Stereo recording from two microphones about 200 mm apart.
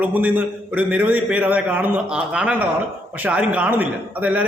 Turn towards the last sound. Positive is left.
turn(degrees=-10)  # may be behind; listen again after turning